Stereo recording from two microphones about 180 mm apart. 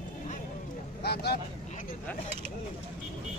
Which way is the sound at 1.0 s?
65° left (ahead or behind).